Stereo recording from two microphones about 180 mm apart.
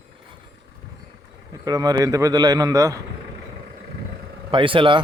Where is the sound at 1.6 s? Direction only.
20° right (ahead or behind).